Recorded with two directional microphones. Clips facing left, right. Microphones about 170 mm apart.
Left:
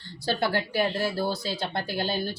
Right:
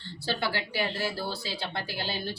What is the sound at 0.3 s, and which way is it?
Speech, 45° left (ahead or behind).